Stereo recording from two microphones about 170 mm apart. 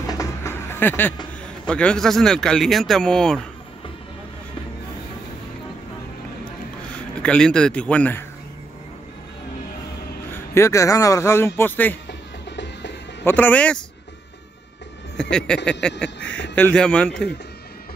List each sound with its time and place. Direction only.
0.0 s music: 20° left (ahead or behind)
1.7 s speech: 5° left (ahead or behind)
7.2 s a man's voice: 5° left (ahead or behind)
10.3 s a man's voice: 15° left (ahead or behind)
12.1 s music: 90° left
13.2 s a man's voice: 10° left (ahead or behind)
15.1 s speech: 5° left (ahead or behind)